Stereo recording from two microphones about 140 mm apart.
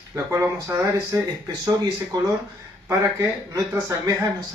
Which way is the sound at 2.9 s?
20° right (ahead or behind).